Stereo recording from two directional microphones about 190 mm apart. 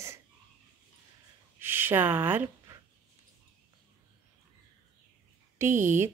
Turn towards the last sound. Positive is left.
turn(degrees=-40)  # may be behind; listen again after turning